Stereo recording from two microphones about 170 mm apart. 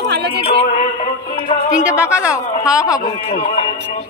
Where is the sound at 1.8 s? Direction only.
5° right (ahead or behind).